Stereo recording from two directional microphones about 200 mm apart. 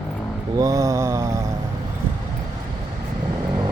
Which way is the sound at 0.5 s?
15° right (ahead or behind).